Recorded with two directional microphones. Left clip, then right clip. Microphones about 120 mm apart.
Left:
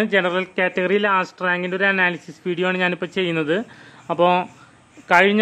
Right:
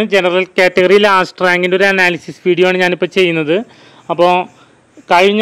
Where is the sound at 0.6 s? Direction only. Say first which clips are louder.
Right 12 dB; 65° right (ahead or behind); by 3.6 s 45° right (ahead or behind).